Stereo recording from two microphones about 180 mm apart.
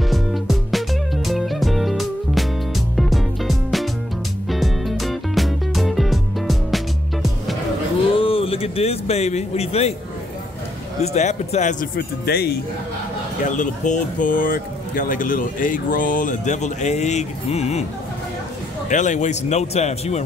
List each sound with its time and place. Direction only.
0.1 s music: centre (ahead or behind)
8.1 s a sound: 30° left (ahead or behind)
11.0 s speech: 40° left (ahead or behind)
12.0 s speech: 60° left (ahead or behind)
13.4 s speech: 45° left (ahead or behind)
18.9 s speech: 45° left (ahead or behind)